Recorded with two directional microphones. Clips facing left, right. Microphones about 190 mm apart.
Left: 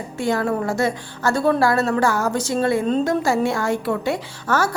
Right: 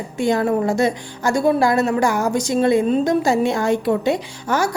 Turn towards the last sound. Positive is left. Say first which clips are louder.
# right 1 dB
turn(degrees=-15)  # may be behind; listen again after turning